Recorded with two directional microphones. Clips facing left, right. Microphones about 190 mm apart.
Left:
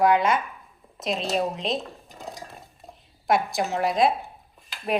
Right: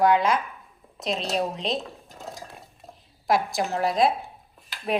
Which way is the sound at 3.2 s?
Centre (ahead or behind).